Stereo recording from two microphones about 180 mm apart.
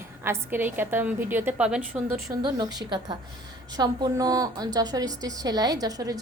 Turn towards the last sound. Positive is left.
turn(degrees=-20)  # may be behind; listen again after turning